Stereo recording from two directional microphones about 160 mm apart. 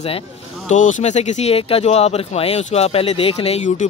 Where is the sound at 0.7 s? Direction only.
50° left (ahead or behind).